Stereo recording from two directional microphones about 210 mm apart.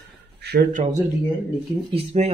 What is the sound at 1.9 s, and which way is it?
Speech, 30° right (ahead or behind).